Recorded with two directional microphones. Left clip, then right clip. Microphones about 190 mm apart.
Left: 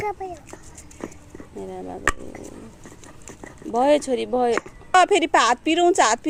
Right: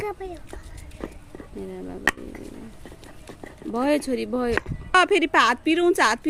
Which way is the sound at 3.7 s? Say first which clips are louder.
Left 5 dB; 30° right (ahead or behind).